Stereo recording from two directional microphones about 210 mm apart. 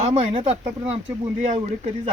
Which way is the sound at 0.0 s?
25° right (ahead or behind).